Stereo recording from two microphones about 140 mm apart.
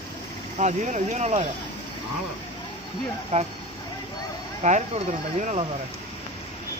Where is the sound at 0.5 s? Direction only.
60° right (ahead or behind).